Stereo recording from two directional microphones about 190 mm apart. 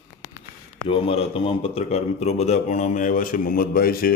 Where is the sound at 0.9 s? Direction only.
30° left (ahead or behind).